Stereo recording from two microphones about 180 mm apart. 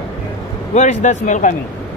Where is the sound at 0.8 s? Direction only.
40° left (ahead or behind).